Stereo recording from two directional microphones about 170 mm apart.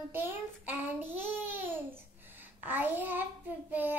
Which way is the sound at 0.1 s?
10° right (ahead or behind).